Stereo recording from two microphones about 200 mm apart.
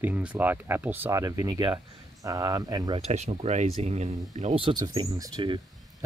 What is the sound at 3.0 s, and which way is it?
Speech, 35° right (ahead or behind).